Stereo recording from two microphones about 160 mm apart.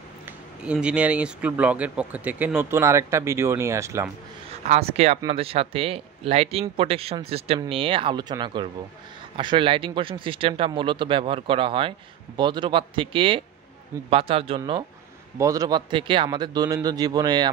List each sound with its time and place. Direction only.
0.6 s speech: 5° right (ahead or behind)
4.6 s a man's voice: 40° right (ahead or behind); by 17.5 s 25° right (ahead or behind)